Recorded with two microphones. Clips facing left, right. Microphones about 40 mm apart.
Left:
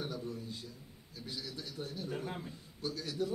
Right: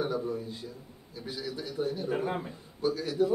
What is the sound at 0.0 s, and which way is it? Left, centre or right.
A man's voice, centre.